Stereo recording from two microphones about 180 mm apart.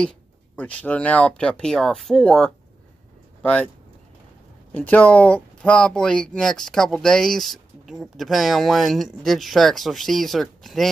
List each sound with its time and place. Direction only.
0.0 s speech: 5° left (ahead or behind)
4.7 s speech: 10° left (ahead or behind)